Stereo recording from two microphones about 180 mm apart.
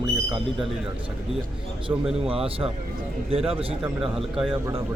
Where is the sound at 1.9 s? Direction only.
15° right (ahead or behind).